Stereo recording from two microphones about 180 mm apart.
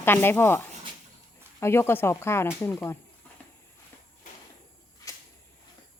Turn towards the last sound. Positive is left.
turn(degrees=20)  # may be behind; listen again after turning